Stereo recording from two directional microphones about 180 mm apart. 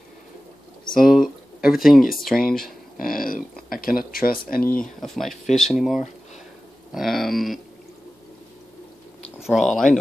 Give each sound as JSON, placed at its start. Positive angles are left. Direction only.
{"t": 0.9, "sound": "speech", "side_deg": 0}
{"t": 3.0, "sound": "a sound", "side_deg": 50}
{"t": 3.7, "sound": "speech", "side_deg": 55}
{"t": 5.0, "sound": "dog", "side_deg": 0}
{"t": 9.4, "sound": "dog", "side_deg": 0}